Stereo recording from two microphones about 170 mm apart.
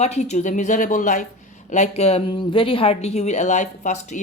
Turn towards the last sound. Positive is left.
turn(degrees=45)  # may be behind; listen again after turning